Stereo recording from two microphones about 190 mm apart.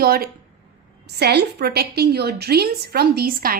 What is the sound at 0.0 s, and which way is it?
A woman's voice, 50° right (ahead or behind).